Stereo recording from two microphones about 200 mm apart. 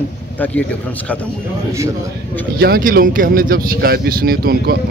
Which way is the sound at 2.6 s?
50° right (ahead or behind).